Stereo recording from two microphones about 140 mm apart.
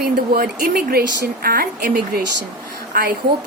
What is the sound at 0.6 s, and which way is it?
A woman's voice, 90° right.